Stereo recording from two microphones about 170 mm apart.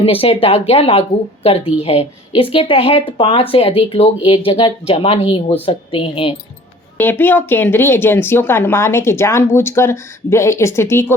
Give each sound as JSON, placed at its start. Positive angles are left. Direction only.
{"t": 0.0, "sound": "speech", "side_deg": 35}
{"t": 6.9, "sound": "speech", "side_deg": 10}